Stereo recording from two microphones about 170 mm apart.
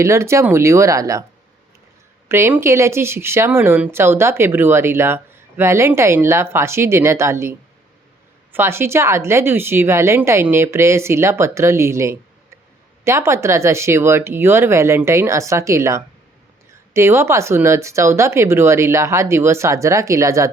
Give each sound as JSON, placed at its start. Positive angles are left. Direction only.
{"t": 0.0, "sound": "speech", "side_deg": -15}
{"t": 2.3, "sound": "speech", "side_deg": -15}
{"t": 8.5, "sound": "speech", "side_deg": -15}